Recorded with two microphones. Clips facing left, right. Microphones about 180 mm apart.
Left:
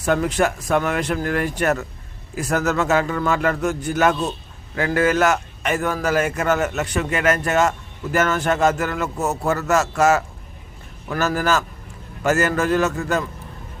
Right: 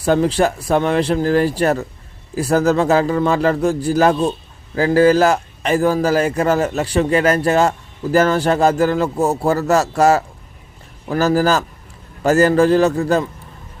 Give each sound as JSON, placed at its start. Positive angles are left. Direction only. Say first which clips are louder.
{"t": 0.0, "sound": "a man's voice", "louder": "right 4 dB", "side_deg": -30}